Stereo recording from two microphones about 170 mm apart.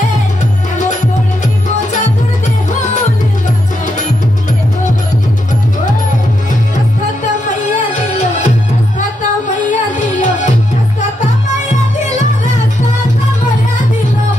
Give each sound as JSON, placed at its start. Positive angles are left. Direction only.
{"t": 1.4, "sound": "music", "side_deg": 45}
{"t": 7.6, "sound": "music", "side_deg": 45}
{"t": 9.7, "sound": "music", "side_deg": 45}